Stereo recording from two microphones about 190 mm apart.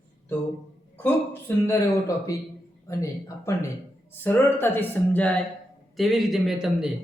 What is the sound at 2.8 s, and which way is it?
A man's voice, 15° left (ahead or behind).